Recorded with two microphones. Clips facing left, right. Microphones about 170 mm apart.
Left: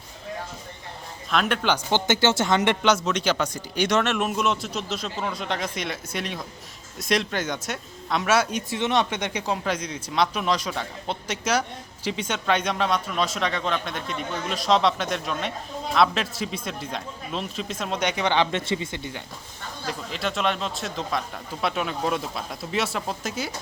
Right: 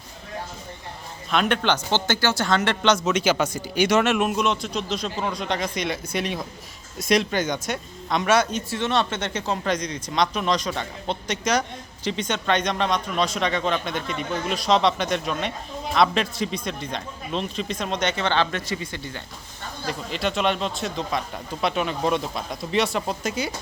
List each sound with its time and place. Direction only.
1.3 s a man's voice: centre (ahead or behind); by 2.9 s 20° left (ahead or behind)
3.0 s speech: 5° right (ahead or behind); by 19.2 s 20° left (ahead or behind)
19.9 s speech: centre (ahead or behind)